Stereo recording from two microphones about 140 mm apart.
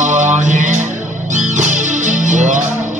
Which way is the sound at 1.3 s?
60° right (ahead or behind).